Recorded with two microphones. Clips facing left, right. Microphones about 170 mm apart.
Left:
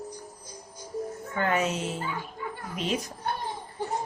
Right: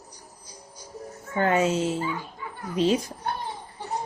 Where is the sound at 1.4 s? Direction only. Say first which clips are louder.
Right 5 dB; 30° right (ahead or behind).